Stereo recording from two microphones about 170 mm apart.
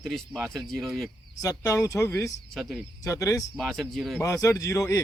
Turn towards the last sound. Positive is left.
turn(degrees=20)  # may be behind; listen again after turning